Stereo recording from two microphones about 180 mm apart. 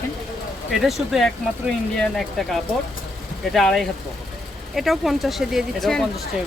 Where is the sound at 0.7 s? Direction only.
Centre (ahead or behind).